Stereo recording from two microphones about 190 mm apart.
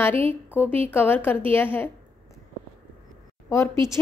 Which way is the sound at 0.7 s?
10° left (ahead or behind).